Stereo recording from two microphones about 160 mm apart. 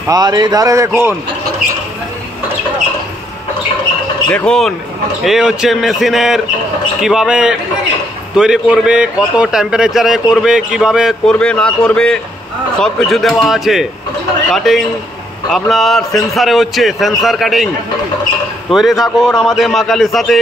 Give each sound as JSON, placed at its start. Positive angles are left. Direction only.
{"t": 0.1, "sound": "a man's voice", "side_deg": -25}
{"t": 4.3, "sound": "a man's voice", "side_deg": 5}
{"t": 18.7, "sound": "a man's voice", "side_deg": 0}